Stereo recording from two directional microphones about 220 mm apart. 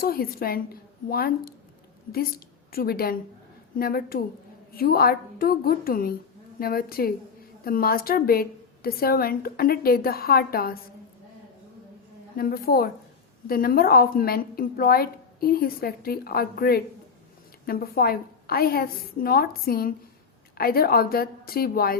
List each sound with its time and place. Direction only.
0.0 s a woman's voice: 40° left (ahead or behind)
2.7 s a woman's voice: 45° left (ahead or behind)
12.4 s a woman's voice: 40° left (ahead or behind)